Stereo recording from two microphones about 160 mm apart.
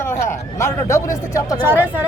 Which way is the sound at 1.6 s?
15° right (ahead or behind).